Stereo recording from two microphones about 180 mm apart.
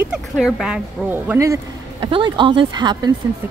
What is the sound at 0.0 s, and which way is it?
A woman's voice, 5° right (ahead or behind).